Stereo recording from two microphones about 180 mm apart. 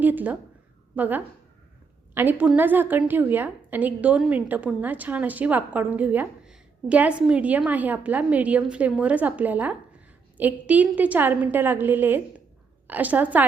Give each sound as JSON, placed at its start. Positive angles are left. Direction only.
{"t": 0.0, "sound": "a woman's voice", "side_deg": -10}